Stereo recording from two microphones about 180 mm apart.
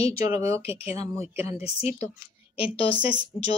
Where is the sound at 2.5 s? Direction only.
30° left (ahead or behind).